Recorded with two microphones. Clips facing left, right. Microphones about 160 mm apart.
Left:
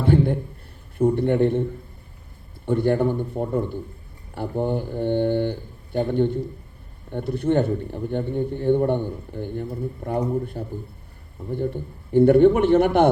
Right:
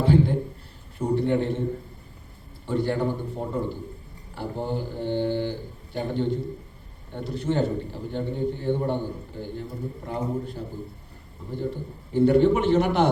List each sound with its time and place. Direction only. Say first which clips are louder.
0.0 s a sound: left 1 dB; 55° left (ahead or behind)
0.9 s a man's voice: left 4 dB; 55° left (ahead or behind)
2.6 s a man's voice: left 5 dB; 55° left (ahead or behind)